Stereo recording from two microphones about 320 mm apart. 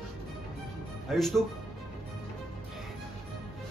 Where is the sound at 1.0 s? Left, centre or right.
Centre.